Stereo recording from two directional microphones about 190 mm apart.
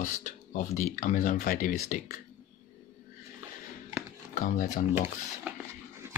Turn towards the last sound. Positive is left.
turn(degrees=-10)  # may be behind; listen again after turning